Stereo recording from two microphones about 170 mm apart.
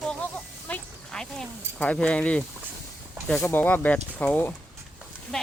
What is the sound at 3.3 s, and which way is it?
Speech, 10° left (ahead or behind).